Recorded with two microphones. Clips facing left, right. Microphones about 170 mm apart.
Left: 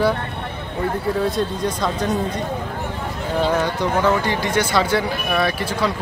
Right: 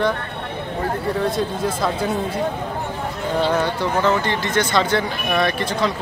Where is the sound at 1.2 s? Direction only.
Centre (ahead or behind).